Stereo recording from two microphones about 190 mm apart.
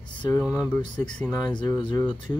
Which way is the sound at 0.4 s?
5° right (ahead or behind).